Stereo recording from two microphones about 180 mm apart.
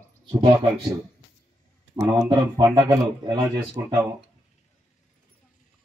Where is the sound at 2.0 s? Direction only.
20° right (ahead or behind).